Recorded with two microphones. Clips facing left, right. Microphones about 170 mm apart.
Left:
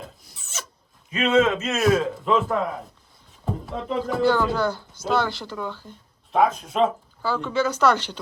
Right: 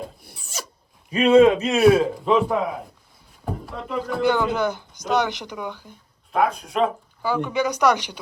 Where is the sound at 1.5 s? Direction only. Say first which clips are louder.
Right 5 dB; 15° right (ahead or behind).